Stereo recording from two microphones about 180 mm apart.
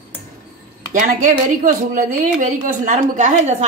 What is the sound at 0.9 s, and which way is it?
Speech, 45° right (ahead or behind).